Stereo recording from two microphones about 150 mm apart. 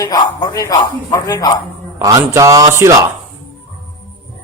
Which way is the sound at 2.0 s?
20° right (ahead or behind).